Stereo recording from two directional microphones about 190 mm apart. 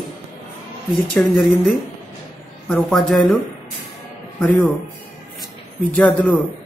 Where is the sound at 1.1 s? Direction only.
Centre (ahead or behind).